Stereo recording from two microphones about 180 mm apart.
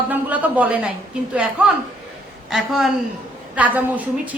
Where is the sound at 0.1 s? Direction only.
10° right (ahead or behind).